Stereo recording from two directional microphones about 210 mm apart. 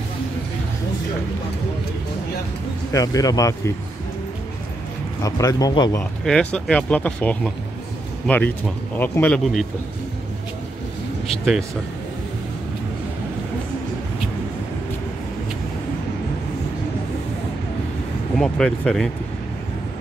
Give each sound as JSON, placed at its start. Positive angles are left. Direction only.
{"t": 2.9, "sound": "speech", "side_deg": 15}
{"t": 5.2, "sound": "speech", "side_deg": 15}
{"t": 6.2, "sound": "speech", "side_deg": 5}
{"t": 18.4, "sound": "speech", "side_deg": 5}